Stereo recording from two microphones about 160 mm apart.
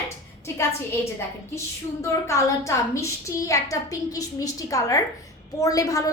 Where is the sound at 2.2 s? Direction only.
20° left (ahead or behind).